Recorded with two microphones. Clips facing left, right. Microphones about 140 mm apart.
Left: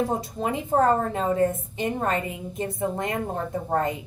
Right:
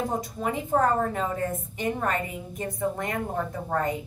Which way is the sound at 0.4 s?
25° left (ahead or behind).